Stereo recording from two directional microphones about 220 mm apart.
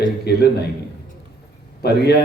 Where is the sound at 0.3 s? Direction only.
50° left (ahead or behind).